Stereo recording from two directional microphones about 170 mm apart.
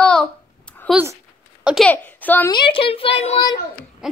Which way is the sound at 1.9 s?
10° left (ahead or behind).